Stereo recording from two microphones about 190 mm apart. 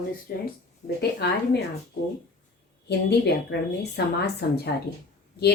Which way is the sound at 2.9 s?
60° left (ahead or behind).